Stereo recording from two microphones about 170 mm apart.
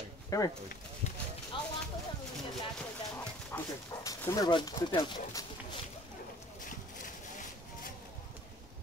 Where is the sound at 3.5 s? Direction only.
15° left (ahead or behind).